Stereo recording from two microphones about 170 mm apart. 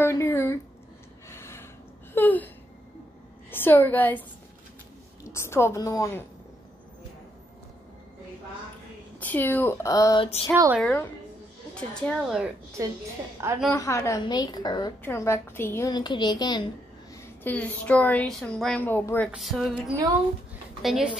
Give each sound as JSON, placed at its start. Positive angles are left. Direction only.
{"t": 0.0, "sound": "a sound", "side_deg": 15}
{"t": 1.3, "sound": "gasp", "side_deg": 15}
{"t": 2.1, "sound": "a sound", "side_deg": 10}
{"t": 3.5, "sound": "a woman's voice", "side_deg": 10}
{"t": 5.3, "sound": "a woman's voice", "side_deg": 15}
{"t": 9.2, "sound": "a woman's voice", "side_deg": 10}
{"t": 10.2, "sound": "a sound", "side_deg": 30}
{"t": 10.5, "sound": "a woman's voice", "side_deg": -15}
{"t": 10.8, "sound": "a woman's voice", "side_deg": 10}
{"t": 13.7, "sound": "a woman's voice", "side_deg": 15}
{"t": 15.9, "sound": "a woman's voice", "side_deg": 25}
{"t": 17.1, "sound": "a woman's voice", "side_deg": 10}
{"t": 19.3, "sound": "speech", "side_deg": 0}